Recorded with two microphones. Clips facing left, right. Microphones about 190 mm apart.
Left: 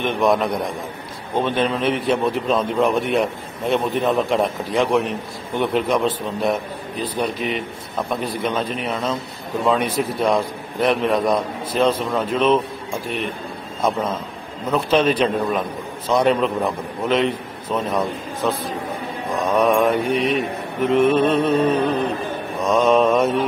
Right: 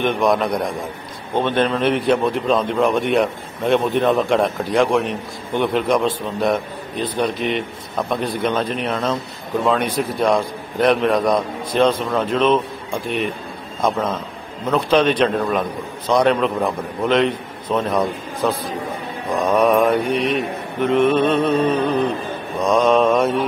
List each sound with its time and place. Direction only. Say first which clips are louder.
0.0 s a man's voice: right 1 dB; centre (ahead or behind)
13.8 s a man's voice: right 1 dB; 5° left (ahead or behind)